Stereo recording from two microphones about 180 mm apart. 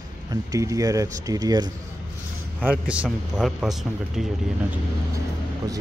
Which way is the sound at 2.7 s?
5° right (ahead or behind).